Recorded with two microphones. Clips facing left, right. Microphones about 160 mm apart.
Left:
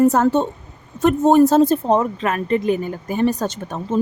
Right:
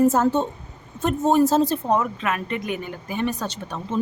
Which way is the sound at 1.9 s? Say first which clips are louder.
Left 4 dB; 35° left (ahead or behind).